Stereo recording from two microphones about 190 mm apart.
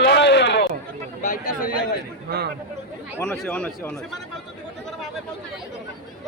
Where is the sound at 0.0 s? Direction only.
65° left (ahead or behind).